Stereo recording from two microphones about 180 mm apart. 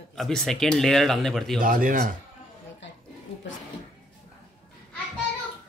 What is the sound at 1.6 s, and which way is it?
Speech, 50° right (ahead or behind).